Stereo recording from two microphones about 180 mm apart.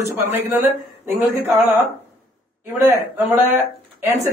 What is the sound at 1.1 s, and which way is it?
Speech, 10° right (ahead or behind).